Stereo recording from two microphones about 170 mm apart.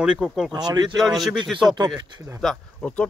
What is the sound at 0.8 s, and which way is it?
Speech, centre (ahead or behind).